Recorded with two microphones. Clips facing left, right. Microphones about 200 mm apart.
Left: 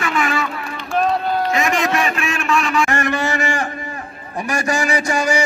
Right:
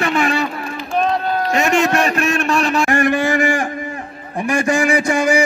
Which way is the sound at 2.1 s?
40° right (ahead or behind).